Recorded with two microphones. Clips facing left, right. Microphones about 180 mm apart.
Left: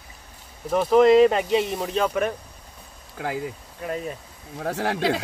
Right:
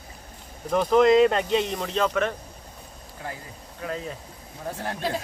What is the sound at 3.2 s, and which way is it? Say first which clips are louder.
Speech: left 9 dB; 90° left.